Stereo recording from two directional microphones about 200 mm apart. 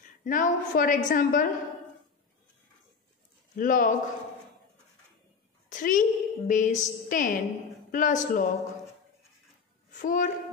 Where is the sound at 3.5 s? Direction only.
40° left (ahead or behind).